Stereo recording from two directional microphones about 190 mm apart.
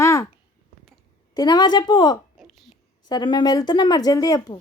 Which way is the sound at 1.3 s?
20° left (ahead or behind).